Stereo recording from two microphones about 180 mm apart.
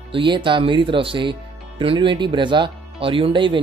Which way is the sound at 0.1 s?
30° right (ahead or behind).